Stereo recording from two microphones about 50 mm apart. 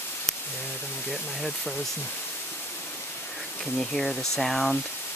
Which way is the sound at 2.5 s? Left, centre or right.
Left.